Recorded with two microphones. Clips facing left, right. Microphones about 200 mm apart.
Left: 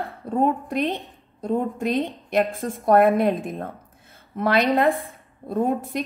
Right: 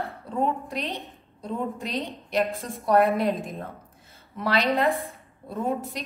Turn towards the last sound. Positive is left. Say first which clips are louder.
# left 5 dB
turn(degrees=50)  # may be behind; listen again after turning